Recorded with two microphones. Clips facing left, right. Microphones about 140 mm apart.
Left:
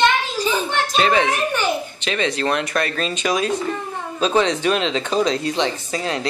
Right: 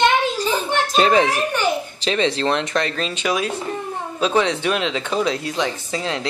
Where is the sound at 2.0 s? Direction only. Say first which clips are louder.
Right 5 dB; 35° right (ahead or behind).